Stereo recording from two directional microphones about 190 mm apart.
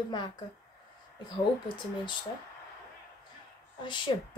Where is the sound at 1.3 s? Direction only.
25° left (ahead or behind).